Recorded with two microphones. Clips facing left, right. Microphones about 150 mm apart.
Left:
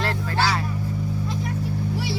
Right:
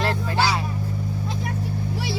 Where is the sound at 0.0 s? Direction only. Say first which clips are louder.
Right 1 dB; 20° right (ahead or behind).